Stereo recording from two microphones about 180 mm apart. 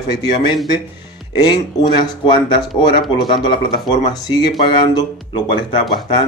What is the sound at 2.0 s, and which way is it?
Speech, 25° left (ahead or behind).